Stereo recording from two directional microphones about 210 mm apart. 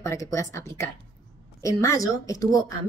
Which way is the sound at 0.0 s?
15° left (ahead or behind).